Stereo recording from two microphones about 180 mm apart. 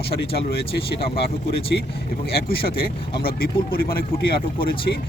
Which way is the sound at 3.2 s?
55° left (ahead or behind).